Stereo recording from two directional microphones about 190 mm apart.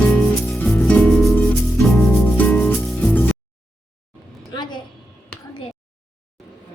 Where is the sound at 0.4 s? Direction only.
5° left (ahead or behind).